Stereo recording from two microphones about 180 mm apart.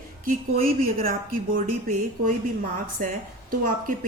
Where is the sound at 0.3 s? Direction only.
55° right (ahead or behind).